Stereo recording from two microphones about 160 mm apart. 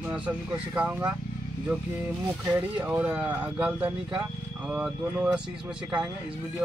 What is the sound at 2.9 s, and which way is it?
Speech, 10° right (ahead or behind).